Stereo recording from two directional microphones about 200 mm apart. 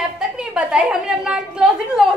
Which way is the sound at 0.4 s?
5° right (ahead or behind).